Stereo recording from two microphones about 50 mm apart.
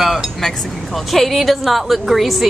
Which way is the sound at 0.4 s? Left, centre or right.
Centre.